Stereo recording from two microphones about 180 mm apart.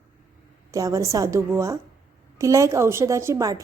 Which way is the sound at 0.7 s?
15° right (ahead or behind).